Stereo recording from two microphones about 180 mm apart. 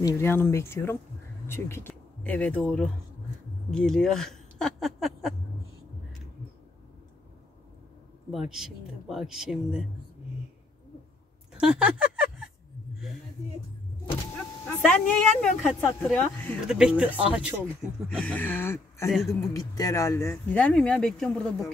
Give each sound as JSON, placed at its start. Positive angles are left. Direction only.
{"t": 0.0, "sound": "speech", "side_deg": 15}
{"t": 8.3, "sound": "speech", "side_deg": 0}
{"t": 11.5, "sound": "a sound", "side_deg": -5}
{"t": 14.8, "sound": "speech", "side_deg": 5}
{"t": 18.1, "sound": "speech", "side_deg": 5}
{"t": 19.0, "sound": "speech", "side_deg": 0}
{"t": 19.5, "sound": "speech", "side_deg": 20}